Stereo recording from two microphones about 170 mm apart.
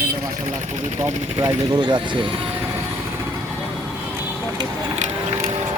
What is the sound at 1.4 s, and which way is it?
Speech, 25° right (ahead or behind).